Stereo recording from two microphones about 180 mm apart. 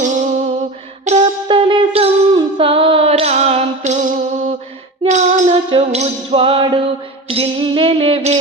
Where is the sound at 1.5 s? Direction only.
25° right (ahead or behind).